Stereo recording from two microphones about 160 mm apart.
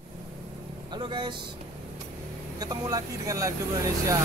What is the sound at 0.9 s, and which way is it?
Vehicle, 30° right (ahead or behind).